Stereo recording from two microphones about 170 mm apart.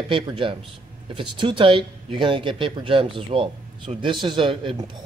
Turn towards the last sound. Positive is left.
turn(degrees=-25)  # may be behind; listen again after turning